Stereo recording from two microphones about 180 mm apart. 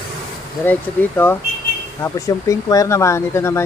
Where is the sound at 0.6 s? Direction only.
10° left (ahead or behind).